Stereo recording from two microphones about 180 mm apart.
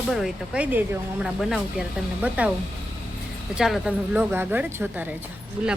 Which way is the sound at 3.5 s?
5° right (ahead or behind).